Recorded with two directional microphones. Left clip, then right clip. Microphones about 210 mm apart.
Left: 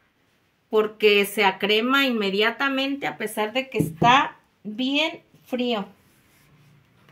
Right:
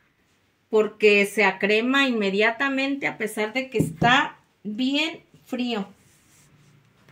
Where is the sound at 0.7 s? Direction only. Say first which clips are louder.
Right 1 dB; 20° left (ahead or behind).